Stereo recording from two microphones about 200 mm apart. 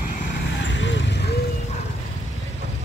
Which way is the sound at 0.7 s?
65° left (ahead or behind).